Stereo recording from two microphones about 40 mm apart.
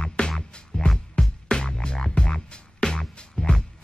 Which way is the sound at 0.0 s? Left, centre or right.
Left.